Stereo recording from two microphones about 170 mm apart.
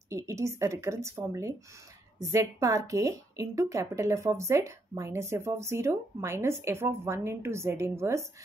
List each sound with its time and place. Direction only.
0.1 s a woman's voice: 15° right (ahead or behind)